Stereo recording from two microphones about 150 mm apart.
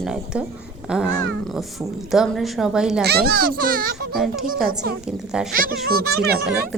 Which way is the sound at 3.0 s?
90° right.